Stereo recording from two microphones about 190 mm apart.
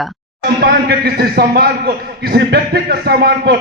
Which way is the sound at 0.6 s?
55° right (ahead or behind).